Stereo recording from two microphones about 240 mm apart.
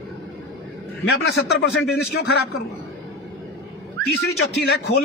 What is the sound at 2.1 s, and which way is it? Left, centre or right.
Speech, left.